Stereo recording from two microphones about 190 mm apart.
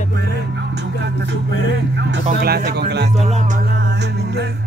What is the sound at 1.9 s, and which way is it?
Speech, 60° right (ahead or behind).